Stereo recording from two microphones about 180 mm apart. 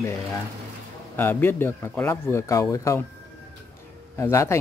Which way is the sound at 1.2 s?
10° left (ahead or behind).